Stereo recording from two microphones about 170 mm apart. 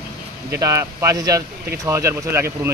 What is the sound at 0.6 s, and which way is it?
Speech, 20° right (ahead or behind).